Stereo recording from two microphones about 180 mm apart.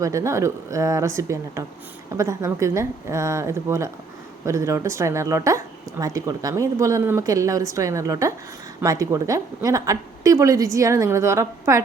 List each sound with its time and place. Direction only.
0.0 s speech: 15° right (ahead or behind)